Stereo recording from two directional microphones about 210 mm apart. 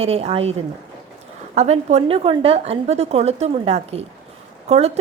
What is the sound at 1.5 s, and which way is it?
A woman's voice, 30° right (ahead or behind).